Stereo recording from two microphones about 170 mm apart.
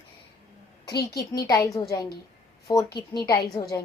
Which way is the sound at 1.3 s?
20° left (ahead or behind).